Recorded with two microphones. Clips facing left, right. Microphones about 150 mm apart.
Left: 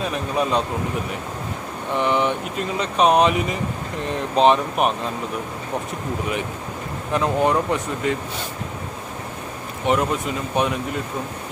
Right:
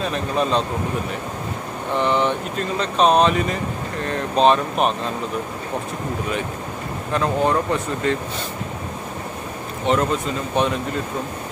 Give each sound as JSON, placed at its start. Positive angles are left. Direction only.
{"t": 0.0, "sound": "speech", "side_deg": 10}
{"t": 2.0, "sound": "speech", "side_deg": 10}
{"t": 7.1, "sound": "speech", "side_deg": 15}
{"t": 9.9, "sound": "speech", "side_deg": 15}